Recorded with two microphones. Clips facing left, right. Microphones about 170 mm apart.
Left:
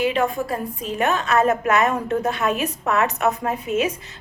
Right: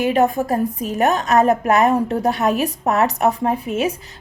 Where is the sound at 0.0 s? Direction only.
45° right (ahead or behind).